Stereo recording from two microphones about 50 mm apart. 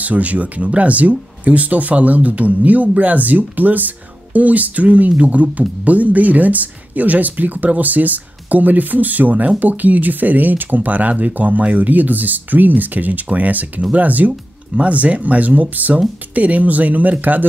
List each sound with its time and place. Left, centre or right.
0.0 s speech: right